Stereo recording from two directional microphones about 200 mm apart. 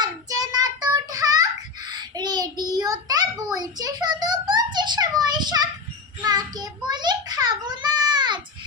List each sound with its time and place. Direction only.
0.0 s child singing: 20° right (ahead or behind)